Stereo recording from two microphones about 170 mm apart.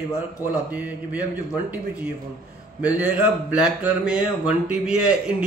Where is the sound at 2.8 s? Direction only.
10° right (ahead or behind).